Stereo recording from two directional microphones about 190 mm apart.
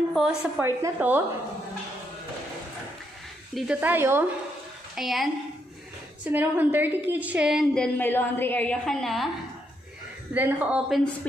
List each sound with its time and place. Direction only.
0.1 s a woman's voice: 5° right (ahead or behind)
3.5 s speech: 5° right (ahead or behind)
4.9 s a woman's voice: centre (ahead or behind)
6.3 s a woman's voice: 10° right (ahead or behind)
10.3 s speech: 10° right (ahead or behind)